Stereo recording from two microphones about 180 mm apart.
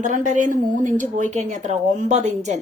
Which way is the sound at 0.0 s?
45° right (ahead or behind).